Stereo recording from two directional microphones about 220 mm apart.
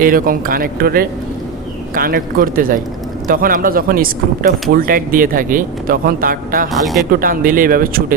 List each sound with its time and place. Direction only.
0.0 s speech: 40° right (ahead or behind)